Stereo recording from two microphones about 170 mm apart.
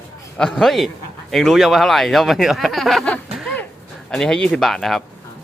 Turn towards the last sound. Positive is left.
turn(degrees=0)  # may be behind; listen again after turning